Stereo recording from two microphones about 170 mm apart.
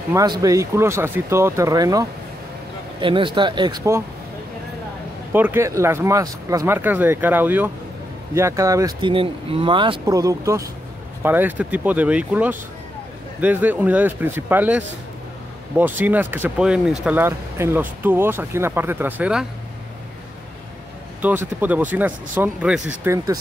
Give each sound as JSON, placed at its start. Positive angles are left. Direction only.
{"t": 0.1, "sound": "speech", "side_deg": -20}
{"t": 5.3, "sound": "speech", "side_deg": -10}
{"t": 9.0, "sound": "speech", "side_deg": -30}
{"t": 21.2, "sound": "speech", "side_deg": -10}
{"t": 23.0, "sound": "speech", "side_deg": -20}